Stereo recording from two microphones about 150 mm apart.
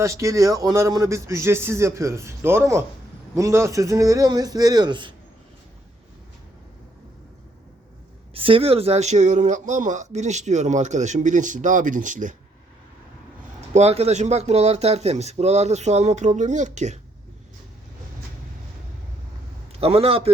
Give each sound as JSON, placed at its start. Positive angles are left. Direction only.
{"t": 0.0, "sound": "a man's voice", "side_deg": -20}
{"t": 8.3, "sound": "speech", "side_deg": -35}
{"t": 13.7, "sound": "speech", "side_deg": -45}
{"t": 19.7, "sound": "a man's voice", "side_deg": -40}